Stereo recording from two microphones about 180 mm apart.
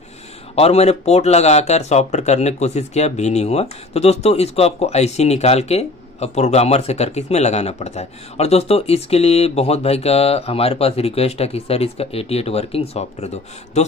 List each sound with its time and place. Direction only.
0.6 s speech: 35° left (ahead or behind)